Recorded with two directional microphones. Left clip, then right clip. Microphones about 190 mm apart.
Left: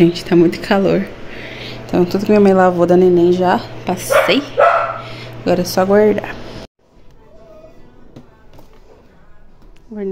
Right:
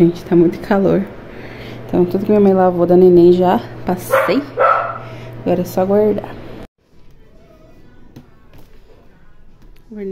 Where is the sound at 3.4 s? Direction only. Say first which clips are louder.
Even; 25° right (ahead or behind).